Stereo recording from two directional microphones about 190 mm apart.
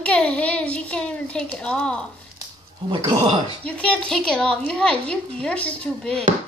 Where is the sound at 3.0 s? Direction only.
20° right (ahead or behind).